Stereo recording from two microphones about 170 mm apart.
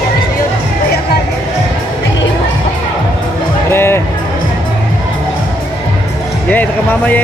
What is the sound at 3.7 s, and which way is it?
Music, 15° left (ahead or behind).